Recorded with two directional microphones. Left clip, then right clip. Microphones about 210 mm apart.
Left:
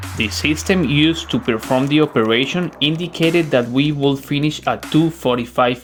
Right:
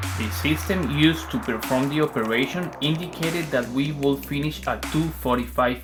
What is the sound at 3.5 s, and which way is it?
Speech, 35° left (ahead or behind).